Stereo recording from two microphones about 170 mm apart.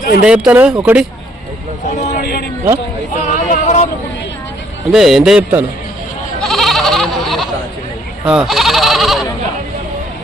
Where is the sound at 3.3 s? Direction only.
45° left (ahead or behind).